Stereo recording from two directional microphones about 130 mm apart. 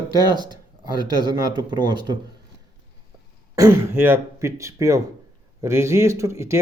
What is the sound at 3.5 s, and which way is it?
Speech, 20° right (ahead or behind).